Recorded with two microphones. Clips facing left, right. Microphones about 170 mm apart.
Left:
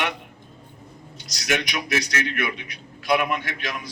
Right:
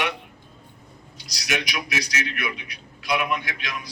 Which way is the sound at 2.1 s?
50° left (ahead or behind).